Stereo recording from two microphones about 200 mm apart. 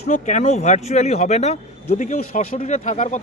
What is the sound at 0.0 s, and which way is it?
Speech, 35° left (ahead or behind).